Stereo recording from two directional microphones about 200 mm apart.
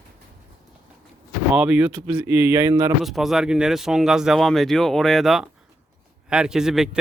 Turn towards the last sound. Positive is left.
turn(degrees=-5)  # may be behind; listen again after turning